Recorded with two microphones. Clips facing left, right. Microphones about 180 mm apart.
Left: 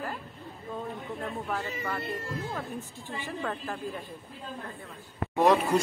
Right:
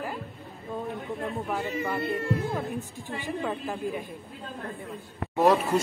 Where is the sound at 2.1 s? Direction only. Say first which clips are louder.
Right 7 dB; 60° right (ahead or behind).